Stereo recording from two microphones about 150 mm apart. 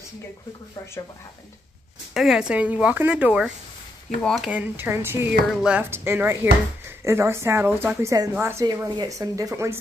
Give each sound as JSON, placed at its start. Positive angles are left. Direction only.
{"t": 2.1, "sound": "a woman's voice", "side_deg": -5}
{"t": 4.2, "sound": "speech", "side_deg": 5}
{"t": 4.5, "sound": "a woman's voice", "side_deg": -10}